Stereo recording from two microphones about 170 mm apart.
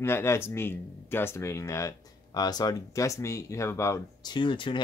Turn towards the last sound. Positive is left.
turn(degrees=30)  # may be behind; listen again after turning